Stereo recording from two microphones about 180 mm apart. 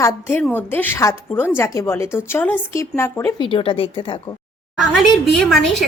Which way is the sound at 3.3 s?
30° left (ahead or behind).